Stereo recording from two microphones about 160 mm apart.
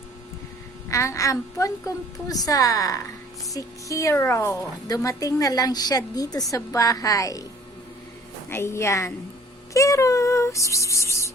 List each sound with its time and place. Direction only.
0.9 s a woman's voice: 20° left (ahead or behind)
8.4 s a woman's voice: 15° left (ahead or behind)